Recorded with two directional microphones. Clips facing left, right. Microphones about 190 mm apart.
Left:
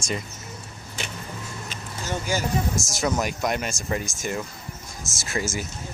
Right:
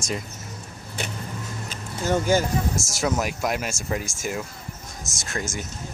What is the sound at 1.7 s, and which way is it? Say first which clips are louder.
Vehicle: right 8 dB; 50° right (ahead or behind).